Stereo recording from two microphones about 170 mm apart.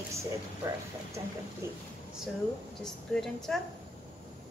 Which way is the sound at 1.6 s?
15° right (ahead or behind).